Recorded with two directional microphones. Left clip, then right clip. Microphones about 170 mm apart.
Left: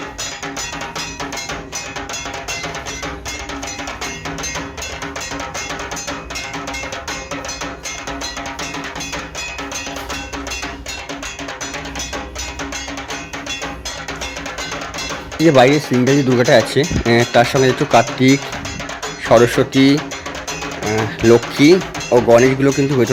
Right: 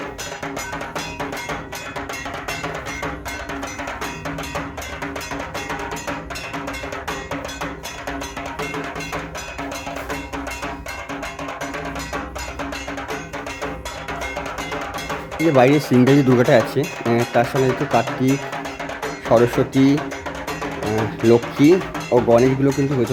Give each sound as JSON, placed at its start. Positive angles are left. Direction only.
{"t": 15.4, "sound": "speech", "side_deg": 5}
{"t": 15.7, "sound": "speech", "side_deg": -10}
{"t": 16.6, "sound": "speech", "side_deg": 0}
{"t": 19.5, "sound": "speech", "side_deg": -5}
{"t": 21.2, "sound": "speech", "side_deg": -5}